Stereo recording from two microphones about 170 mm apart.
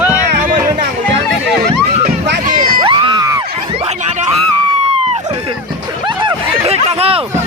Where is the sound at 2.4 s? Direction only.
60° right (ahead or behind).